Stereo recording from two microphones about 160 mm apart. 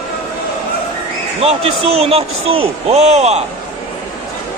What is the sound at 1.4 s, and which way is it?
A man's voice, 40° right (ahead or behind).